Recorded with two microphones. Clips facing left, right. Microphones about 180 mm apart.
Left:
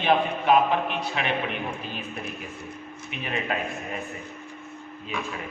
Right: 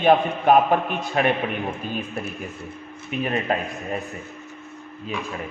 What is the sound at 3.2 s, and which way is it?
Speech, 40° right (ahead or behind).